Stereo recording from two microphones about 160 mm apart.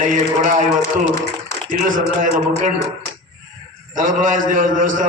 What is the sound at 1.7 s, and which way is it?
A man's voice, 55° right (ahead or behind).